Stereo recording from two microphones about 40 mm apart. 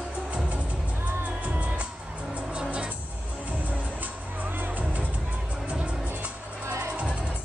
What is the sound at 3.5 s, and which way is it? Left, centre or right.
Music, right.